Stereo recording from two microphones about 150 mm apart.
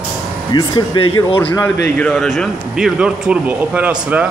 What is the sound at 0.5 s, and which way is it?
Speech, 30° left (ahead or behind).